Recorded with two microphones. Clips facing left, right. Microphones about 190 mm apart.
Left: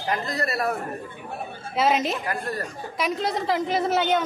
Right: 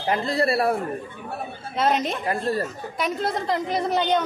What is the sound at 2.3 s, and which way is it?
Speech, 25° right (ahead or behind).